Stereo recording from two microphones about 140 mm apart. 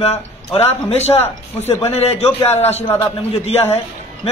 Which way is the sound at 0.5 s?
45° left (ahead or behind).